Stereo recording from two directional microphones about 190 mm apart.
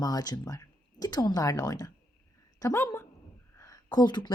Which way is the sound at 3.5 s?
15° left (ahead or behind).